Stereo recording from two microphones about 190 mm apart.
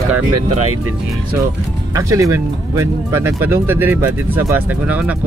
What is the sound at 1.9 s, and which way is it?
Speech, 15° right (ahead or behind).